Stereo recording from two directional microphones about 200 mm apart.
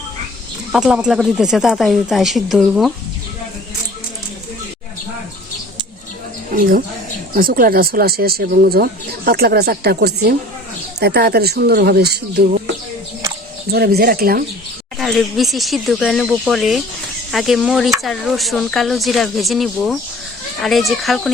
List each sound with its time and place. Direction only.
0.7 s speech: 5° right (ahead or behind)
6.6 s speech: 45° right (ahead or behind)
13.7 s speech: 50° right (ahead or behind)
14.9 s speech: centre (ahead or behind)